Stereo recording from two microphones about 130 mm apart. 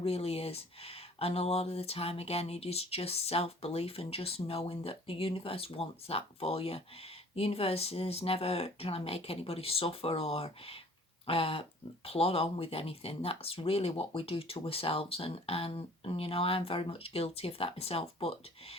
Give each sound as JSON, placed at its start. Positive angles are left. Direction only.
{"t": 0.0, "sound": "speech", "side_deg": 50}